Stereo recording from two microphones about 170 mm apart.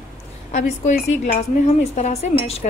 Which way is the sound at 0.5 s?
45° left (ahead or behind).